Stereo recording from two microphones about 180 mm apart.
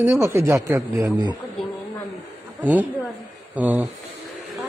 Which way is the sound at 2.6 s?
10° right (ahead or behind).